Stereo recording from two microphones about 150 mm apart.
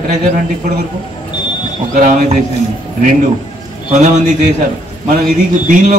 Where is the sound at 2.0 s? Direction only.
55° right (ahead or behind).